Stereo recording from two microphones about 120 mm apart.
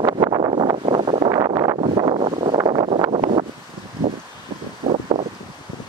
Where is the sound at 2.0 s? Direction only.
45° right (ahead or behind).